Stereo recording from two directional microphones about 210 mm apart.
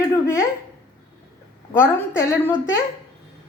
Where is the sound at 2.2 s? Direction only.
10° left (ahead or behind).